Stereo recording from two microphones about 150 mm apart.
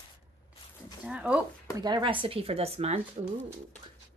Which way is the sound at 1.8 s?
30° right (ahead or behind).